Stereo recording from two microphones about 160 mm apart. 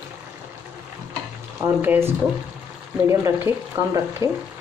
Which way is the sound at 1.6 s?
15° right (ahead or behind).